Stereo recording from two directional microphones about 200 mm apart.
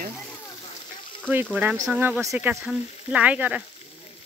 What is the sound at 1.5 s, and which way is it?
Speech, 10° right (ahead or behind).